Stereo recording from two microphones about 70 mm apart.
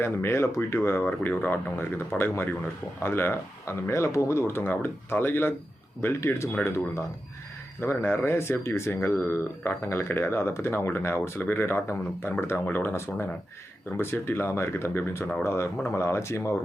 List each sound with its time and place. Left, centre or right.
0.0 s speech: left
6.5 s speech: left
7.8 s speech: left